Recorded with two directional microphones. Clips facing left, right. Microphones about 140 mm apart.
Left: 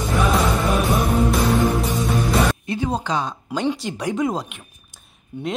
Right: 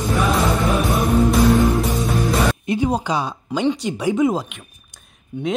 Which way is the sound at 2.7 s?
15° right (ahead or behind).